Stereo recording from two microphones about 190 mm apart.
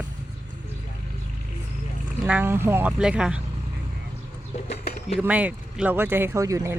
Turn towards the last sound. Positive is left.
turn(degrees=-15)  # may be behind; listen again after turning